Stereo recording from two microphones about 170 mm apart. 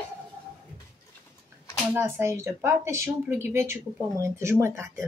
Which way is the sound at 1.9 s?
10° right (ahead or behind).